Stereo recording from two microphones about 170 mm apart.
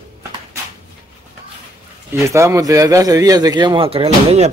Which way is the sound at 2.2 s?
15° right (ahead or behind).